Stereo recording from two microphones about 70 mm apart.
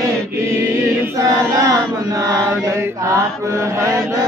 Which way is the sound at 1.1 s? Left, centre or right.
Right.